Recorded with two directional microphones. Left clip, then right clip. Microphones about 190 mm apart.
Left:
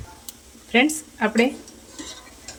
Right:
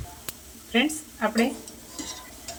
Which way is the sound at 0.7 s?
50° left (ahead or behind).